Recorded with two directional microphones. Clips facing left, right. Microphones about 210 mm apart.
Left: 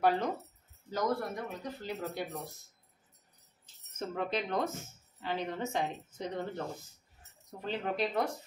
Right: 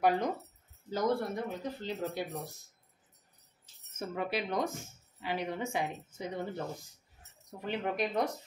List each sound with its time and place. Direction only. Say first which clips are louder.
0.8 s speech: right 2 dB; 30° right (ahead or behind)
4.0 s a woman's voice: even; 10° right (ahead or behind)